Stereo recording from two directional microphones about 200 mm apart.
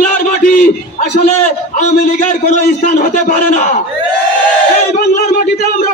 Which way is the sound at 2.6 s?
40° left (ahead or behind).